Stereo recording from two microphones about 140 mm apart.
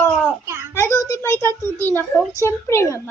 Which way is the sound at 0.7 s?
20° left (ahead or behind).